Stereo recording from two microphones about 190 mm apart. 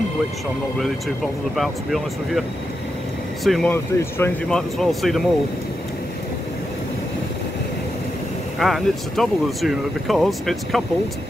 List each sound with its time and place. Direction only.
1.6 s speech: centre (ahead or behind)
3.4 s speech: centre (ahead or behind)
3.7 s speech: 10° left (ahead or behind)
8.5 s speech: centre (ahead or behind)